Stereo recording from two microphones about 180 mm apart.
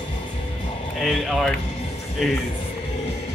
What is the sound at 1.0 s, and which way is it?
Speech, centre (ahead or behind).